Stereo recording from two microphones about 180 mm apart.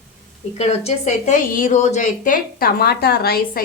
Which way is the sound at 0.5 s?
35° left (ahead or behind).